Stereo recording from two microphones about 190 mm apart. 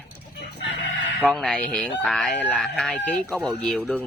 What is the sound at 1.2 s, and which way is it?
Speech, centre (ahead or behind).